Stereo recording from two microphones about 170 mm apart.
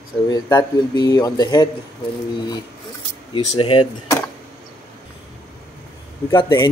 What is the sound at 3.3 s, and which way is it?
Speech, 30° left (ahead or behind).